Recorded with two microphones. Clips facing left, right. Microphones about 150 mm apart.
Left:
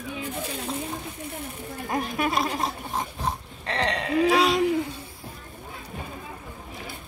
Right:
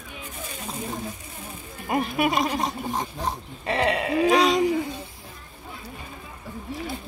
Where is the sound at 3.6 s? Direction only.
10° right (ahead or behind).